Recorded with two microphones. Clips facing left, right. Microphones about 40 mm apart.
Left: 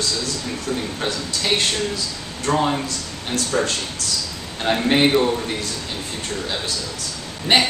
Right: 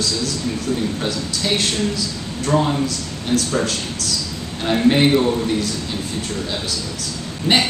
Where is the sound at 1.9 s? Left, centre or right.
Centre.